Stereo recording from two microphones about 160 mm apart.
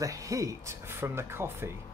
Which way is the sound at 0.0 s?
20° right (ahead or behind).